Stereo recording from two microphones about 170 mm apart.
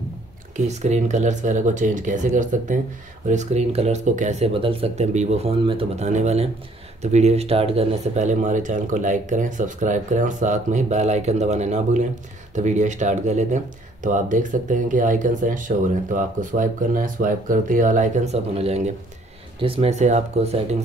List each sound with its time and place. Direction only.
0.7 s speech: 40° right (ahead or behind)